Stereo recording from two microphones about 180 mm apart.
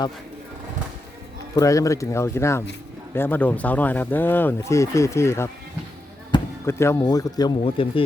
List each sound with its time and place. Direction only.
1.5 s speech: 20° left (ahead or behind)
6.3 s basketball bounce: 25° left (ahead or behind)
6.7 s speech: 15° left (ahead or behind)